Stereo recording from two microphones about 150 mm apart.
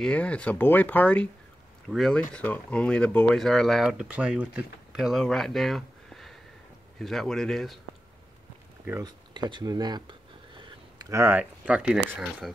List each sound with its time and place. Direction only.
0.0 s speech: 10° left (ahead or behind)
9.0 s a sound: 30° right (ahead or behind)
11.1 s speech: 15° right (ahead or behind)